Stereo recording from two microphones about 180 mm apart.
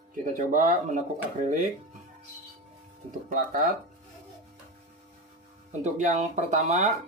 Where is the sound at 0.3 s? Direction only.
50° right (ahead or behind).